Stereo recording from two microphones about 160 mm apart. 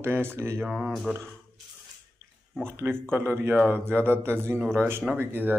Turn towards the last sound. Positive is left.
turn(degrees=-10)  # may be behind; listen again after turning